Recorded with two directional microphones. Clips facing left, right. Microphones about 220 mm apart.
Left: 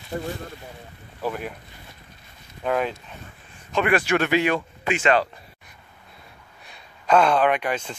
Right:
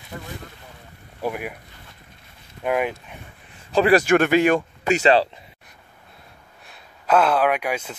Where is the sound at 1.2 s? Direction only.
10° right (ahead or behind).